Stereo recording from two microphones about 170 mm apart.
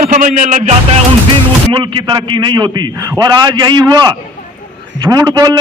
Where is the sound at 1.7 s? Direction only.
30° right (ahead or behind).